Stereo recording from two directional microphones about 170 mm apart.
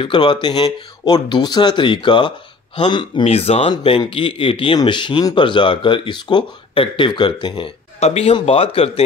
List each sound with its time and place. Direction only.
0.0 s a man's voice: 30° left (ahead or behind)